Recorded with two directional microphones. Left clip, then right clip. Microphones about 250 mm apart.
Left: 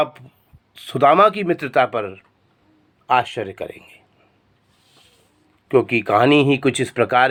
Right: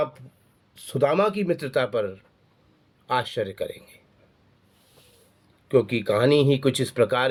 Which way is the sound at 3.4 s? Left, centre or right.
Left.